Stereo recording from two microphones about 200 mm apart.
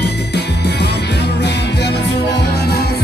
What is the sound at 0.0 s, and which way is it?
Music, 55° left (ahead or behind).